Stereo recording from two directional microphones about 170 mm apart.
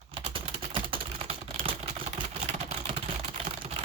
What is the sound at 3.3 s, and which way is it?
Typing, 35° right (ahead or behind).